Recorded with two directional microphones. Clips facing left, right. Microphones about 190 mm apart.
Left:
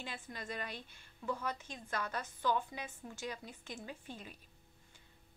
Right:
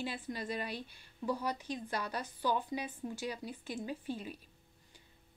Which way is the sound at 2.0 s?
10° right (ahead or behind).